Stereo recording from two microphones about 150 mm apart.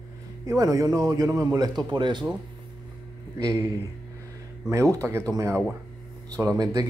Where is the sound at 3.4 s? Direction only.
25° right (ahead or behind).